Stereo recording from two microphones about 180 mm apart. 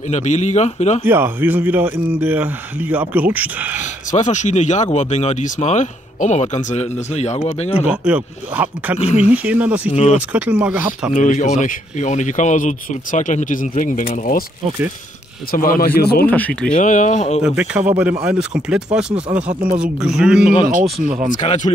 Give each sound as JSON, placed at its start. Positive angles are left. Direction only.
{"t": 0.1, "sound": "speech", "side_deg": 40}
{"t": 1.0, "sound": "speech", "side_deg": -10}
{"t": 4.1, "sound": "speech", "side_deg": 40}
{"t": 7.9, "sound": "speech", "side_deg": -5}
{"t": 8.9, "sound": "speech", "side_deg": 40}
{"t": 9.3, "sound": "speech", "side_deg": -10}
{"t": 9.8, "sound": "speech", "side_deg": 35}
{"t": 10.1, "sound": "speech", "side_deg": -10}
{"t": 11.1, "sound": "speech", "side_deg": 45}
{"t": 15.5, "sound": "speech", "side_deg": 50}
{"t": 16.3, "sound": "speech", "side_deg": 10}
{"t": 16.7, "sound": "speech", "side_deg": 45}
{"t": 17.4, "sound": "speech", "side_deg": -5}
{"t": 21.3, "sound": "speech", "side_deg": 40}